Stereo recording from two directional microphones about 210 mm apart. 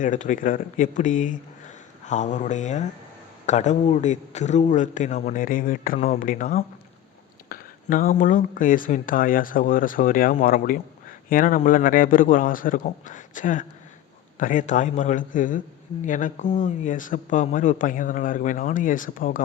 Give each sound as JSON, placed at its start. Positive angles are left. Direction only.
{"t": 0.0, "sound": "speech", "side_deg": 40}